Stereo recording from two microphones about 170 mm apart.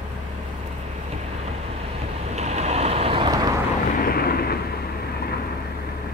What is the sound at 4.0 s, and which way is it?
Vehicle, 65° left (ahead or behind).